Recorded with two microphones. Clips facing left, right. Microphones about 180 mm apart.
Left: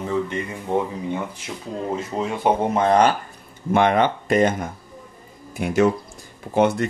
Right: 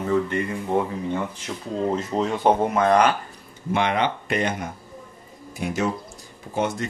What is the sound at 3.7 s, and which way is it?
Speech, 50° left (ahead or behind).